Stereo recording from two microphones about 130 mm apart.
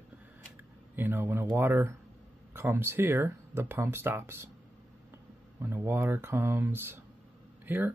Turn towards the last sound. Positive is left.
turn(degrees=-15)  # may be behind; listen again after turning